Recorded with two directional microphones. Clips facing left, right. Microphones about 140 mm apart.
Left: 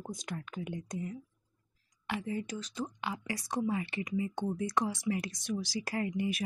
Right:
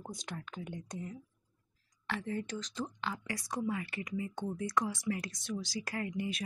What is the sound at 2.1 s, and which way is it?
Speech, 10° left (ahead or behind).